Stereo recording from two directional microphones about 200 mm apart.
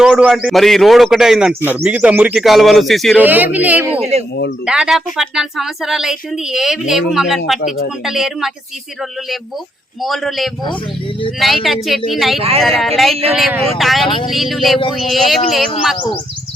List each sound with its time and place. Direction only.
0.0 s a woman's voice: 5° right (ahead or behind)
3.9 s speech: 30° right (ahead or behind)
4.6 s a woman's voice: 5° right (ahead or behind)
10.0 s a woman's voice: centre (ahead or behind)
12.4 s speech: 30° right (ahead or behind)
13.3 s a woman's voice: centre (ahead or behind)